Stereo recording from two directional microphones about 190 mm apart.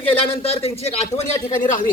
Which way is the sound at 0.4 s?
35° left (ahead or behind).